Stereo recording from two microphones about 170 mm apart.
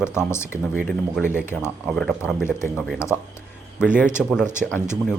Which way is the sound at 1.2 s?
15° left (ahead or behind).